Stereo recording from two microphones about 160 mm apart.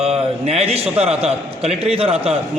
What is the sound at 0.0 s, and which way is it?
A man's voice, 40° right (ahead or behind).